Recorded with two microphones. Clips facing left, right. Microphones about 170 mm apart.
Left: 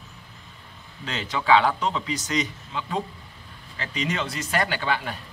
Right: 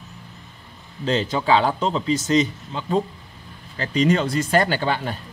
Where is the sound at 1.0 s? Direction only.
30° right (ahead or behind).